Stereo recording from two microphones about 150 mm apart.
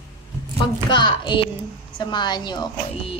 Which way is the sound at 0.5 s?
30° left (ahead or behind).